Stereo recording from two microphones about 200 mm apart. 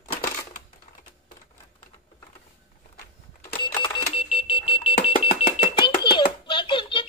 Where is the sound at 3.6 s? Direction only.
20° left (ahead or behind).